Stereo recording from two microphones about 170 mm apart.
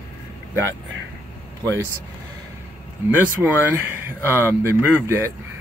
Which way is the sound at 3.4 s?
15° right (ahead or behind).